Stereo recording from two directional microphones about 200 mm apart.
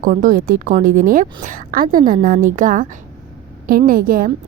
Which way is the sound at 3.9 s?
45° right (ahead or behind).